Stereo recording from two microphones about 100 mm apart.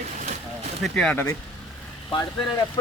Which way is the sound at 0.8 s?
Centre (ahead or behind).